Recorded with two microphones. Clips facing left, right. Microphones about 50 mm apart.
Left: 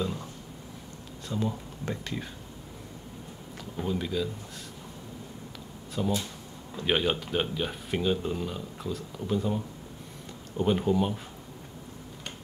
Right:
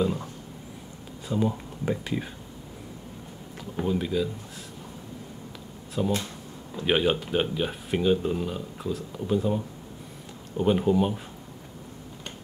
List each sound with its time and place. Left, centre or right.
0.0 s a sound: centre
1.3 s speech: centre
3.8 s speech: centre
6.0 s speech: centre
10.6 s speech: centre